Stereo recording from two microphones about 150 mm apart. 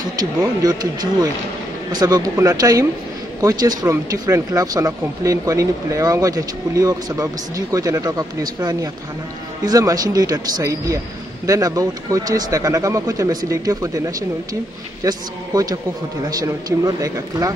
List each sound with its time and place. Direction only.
0.2 s speech: 25° right (ahead or behind)
1.9 s speech: 25° right (ahead or behind)